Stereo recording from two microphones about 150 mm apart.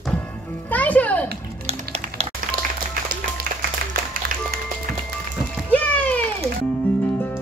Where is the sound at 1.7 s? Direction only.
45° right (ahead or behind).